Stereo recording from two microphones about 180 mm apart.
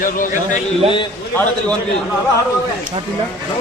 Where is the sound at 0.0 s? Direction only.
50° left (ahead or behind).